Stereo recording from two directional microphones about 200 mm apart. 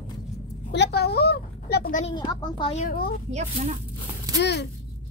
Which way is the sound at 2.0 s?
25° left (ahead or behind).